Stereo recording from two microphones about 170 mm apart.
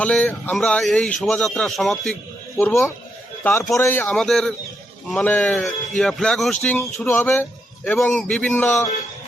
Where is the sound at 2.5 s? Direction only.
15° left (ahead or behind).